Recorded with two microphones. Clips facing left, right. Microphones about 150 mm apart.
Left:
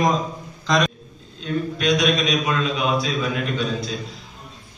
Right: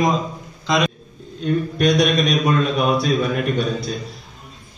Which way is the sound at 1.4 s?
55° right (ahead or behind).